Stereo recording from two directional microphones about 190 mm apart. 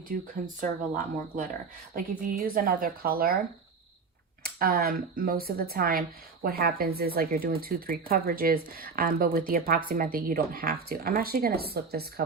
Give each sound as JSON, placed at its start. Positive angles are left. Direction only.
{"t": 0.1, "sound": "speech", "side_deg": -45}
{"t": 2.0, "sound": "speech", "side_deg": -50}
{"t": 4.4, "sound": "speech", "side_deg": -50}